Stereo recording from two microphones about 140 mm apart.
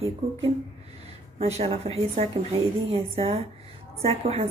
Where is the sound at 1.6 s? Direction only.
45° right (ahead or behind).